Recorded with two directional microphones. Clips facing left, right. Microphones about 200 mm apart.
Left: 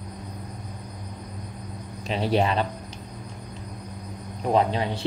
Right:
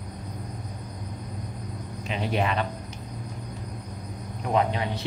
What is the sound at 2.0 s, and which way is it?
Speech, 35° left (ahead or behind).